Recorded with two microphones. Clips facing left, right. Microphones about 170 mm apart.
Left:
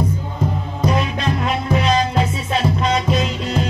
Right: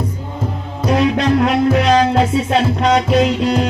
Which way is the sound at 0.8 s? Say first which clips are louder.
Right 6 dB; 70° right (ahead or behind).